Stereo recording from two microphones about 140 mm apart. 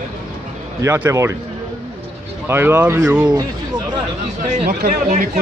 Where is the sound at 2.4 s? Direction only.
15° right (ahead or behind).